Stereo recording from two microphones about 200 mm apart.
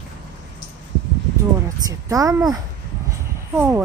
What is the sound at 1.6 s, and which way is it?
Speech, 15° right (ahead or behind).